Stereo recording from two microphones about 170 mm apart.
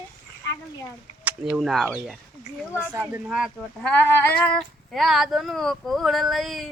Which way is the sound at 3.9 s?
15° left (ahead or behind).